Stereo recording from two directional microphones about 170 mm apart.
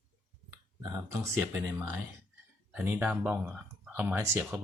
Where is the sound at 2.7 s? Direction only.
10° right (ahead or behind).